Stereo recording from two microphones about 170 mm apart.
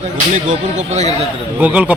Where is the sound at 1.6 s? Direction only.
10° right (ahead or behind).